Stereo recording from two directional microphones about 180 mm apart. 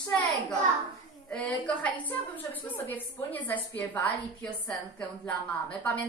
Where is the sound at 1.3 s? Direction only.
5° left (ahead or behind).